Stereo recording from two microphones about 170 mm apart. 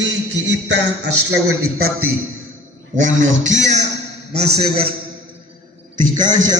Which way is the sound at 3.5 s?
45° right (ahead or behind).